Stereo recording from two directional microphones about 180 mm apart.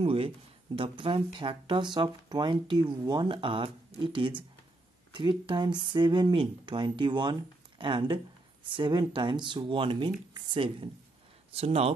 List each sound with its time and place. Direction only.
0.0 s speech: 30° right (ahead or behind)